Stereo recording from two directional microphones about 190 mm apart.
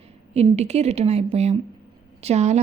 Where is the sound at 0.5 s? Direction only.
35° right (ahead or behind).